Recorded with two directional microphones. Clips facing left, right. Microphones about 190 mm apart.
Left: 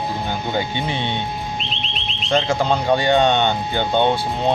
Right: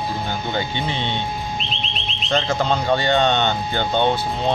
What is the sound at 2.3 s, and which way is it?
Speech, 10° left (ahead or behind).